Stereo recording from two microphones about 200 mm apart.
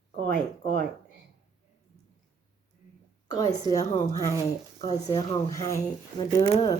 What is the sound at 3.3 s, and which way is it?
A woman's voice, 15° left (ahead or behind).